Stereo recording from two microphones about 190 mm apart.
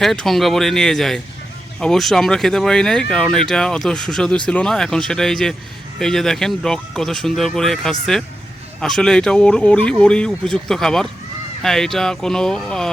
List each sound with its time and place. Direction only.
0.0 s speech: centre (ahead or behind)